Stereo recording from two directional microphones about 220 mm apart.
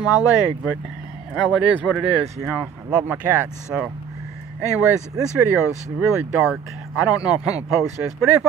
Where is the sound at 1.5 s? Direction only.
5° right (ahead or behind).